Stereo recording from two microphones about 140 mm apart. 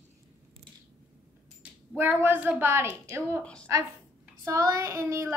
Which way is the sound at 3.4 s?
5° left (ahead or behind).